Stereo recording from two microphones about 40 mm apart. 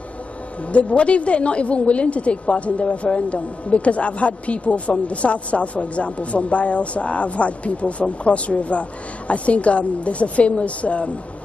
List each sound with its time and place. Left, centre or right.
0.7 s a woman's voice: left